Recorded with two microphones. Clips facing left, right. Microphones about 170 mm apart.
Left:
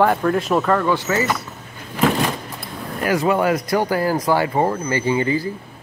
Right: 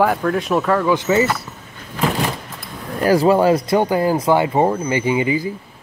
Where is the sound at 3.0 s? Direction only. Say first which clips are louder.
Right 5 dB; 35° right (ahead or behind); by 5.5 s 15° right (ahead or behind).